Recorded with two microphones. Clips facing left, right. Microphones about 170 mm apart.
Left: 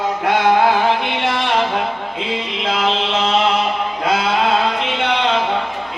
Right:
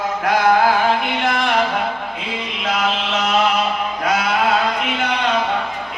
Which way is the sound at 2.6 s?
30° left (ahead or behind).